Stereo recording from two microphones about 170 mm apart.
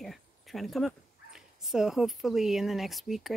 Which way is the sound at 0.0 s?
Centre (ahead or behind).